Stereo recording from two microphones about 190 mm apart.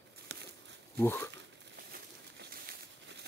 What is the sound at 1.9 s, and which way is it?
Crumpling, 55° right (ahead or behind).